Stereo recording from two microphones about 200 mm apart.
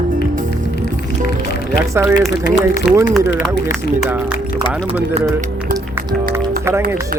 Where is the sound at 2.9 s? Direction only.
Centre (ahead or behind).